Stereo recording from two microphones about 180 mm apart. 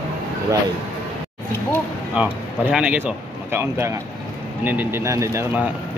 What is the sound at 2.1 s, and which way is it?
Speech, 5° right (ahead or behind).